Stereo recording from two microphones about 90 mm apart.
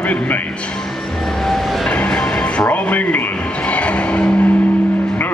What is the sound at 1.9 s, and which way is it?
Music, 10° left (ahead or behind).